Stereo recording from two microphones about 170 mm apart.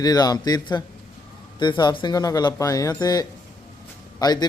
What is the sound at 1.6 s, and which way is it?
A man's voice, 25° left (ahead or behind).